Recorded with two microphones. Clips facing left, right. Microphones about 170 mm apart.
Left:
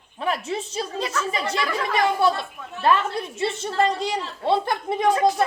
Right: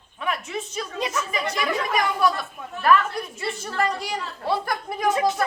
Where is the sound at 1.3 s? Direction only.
30° left (ahead or behind).